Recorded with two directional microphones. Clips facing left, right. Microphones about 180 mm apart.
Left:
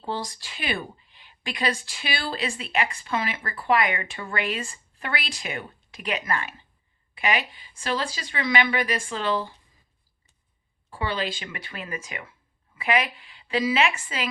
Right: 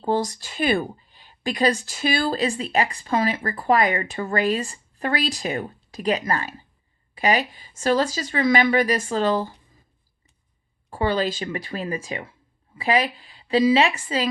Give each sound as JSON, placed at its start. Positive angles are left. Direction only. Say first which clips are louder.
{"t": 0.0, "sound": "speech", "louder": "right 8 dB", "side_deg": -45}
{"t": 10.8, "sound": "speech", "louder": "right 6 dB", "side_deg": -45}